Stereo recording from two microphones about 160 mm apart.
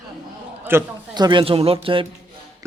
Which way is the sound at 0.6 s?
15° right (ahead or behind).